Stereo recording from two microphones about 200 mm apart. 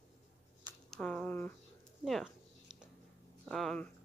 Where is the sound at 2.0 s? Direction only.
Centre (ahead or behind).